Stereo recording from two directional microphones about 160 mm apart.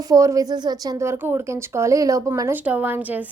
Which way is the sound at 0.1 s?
20° right (ahead or behind).